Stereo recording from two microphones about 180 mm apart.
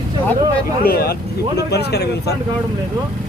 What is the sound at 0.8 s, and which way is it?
Speech, 60° left (ahead or behind).